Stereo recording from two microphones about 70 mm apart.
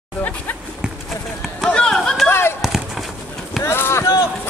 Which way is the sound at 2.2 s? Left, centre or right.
Left.